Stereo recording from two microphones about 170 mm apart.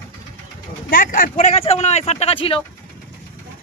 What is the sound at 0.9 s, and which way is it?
Speech, 55° left (ahead or behind).